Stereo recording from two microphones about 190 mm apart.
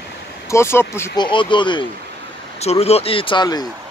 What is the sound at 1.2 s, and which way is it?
Speech, 25° left (ahead or behind).